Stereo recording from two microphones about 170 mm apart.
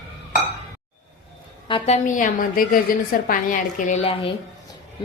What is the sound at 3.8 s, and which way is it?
Speech, 45° left (ahead or behind).